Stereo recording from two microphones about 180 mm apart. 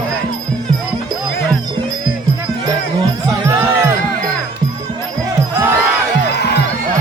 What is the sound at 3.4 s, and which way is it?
Music, 15° right (ahead or behind).